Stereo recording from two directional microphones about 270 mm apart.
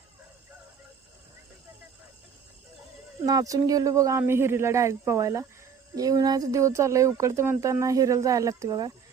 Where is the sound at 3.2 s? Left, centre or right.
Centre.